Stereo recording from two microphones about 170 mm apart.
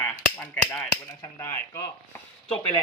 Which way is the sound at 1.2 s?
15° left (ahead or behind).